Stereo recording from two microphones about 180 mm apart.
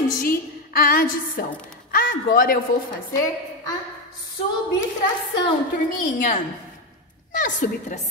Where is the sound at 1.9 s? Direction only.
55° left (ahead or behind).